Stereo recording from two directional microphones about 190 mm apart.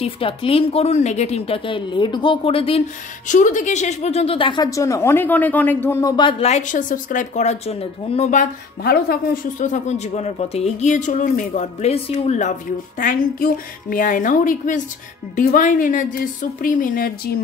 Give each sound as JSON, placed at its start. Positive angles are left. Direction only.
{"t": 0.0, "sound": "a woman's voice", "side_deg": 30}
{"t": 3.3, "sound": "a woman's voice", "side_deg": 40}